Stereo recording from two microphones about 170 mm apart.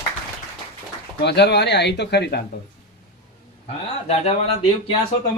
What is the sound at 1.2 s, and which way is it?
Speech, 80° left.